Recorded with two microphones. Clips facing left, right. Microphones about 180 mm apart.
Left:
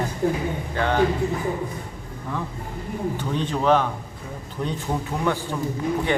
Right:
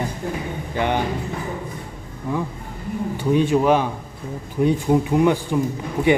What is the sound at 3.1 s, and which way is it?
Speech, 10° right (ahead or behind).